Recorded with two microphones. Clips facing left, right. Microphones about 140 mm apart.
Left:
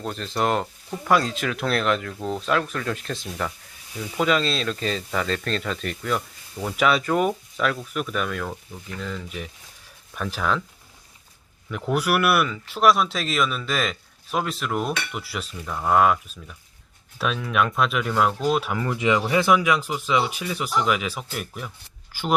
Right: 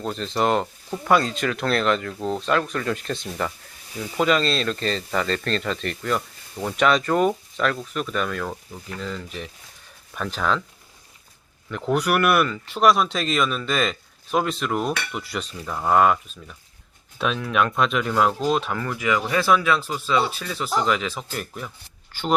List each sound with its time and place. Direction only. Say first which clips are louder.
0.0 s speech: right 2 dB; centre (ahead or behind)
11.7 s speech: right 1 dB; 5° left (ahead or behind)
18.9 s speech: left 3 dB; 20° left (ahead or behind)